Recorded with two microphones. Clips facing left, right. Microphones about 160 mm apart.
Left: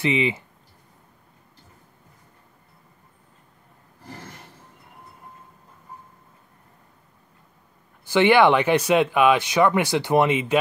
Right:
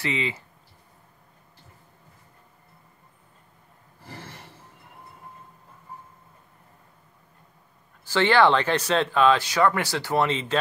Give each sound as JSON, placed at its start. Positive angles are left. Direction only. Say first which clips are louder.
{"t": 0.0, "sound": "speech", "louder": "left 6 dB", "side_deg": 20}
{"t": 8.1, "sound": "speech", "louder": "left 3 dB", "side_deg": 15}